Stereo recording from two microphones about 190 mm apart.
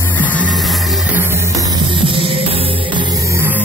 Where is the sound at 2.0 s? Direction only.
30° right (ahead or behind).